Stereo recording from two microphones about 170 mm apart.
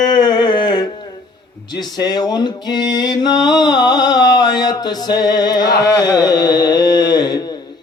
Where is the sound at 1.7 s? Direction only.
25° left (ahead or behind).